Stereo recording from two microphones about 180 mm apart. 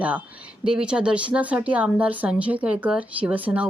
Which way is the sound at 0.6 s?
5° right (ahead or behind).